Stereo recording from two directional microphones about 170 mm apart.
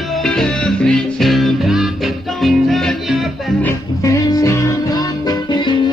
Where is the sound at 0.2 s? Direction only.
Centre (ahead or behind).